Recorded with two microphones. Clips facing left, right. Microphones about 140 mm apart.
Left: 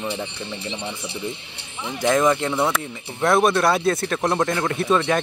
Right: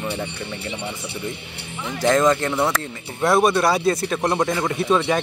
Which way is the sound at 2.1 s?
5° left (ahead or behind).